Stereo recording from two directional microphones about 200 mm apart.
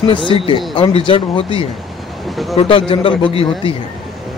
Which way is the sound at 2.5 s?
25° left (ahead or behind).